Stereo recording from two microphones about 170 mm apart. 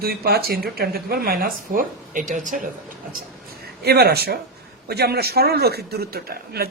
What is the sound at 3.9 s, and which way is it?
A man's voice, 65° right (ahead or behind).